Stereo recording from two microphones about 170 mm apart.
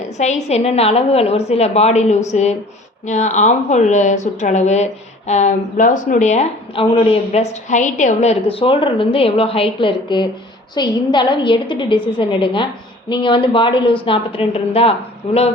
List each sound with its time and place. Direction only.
0.2 s a woman's voice: 40° left (ahead or behind)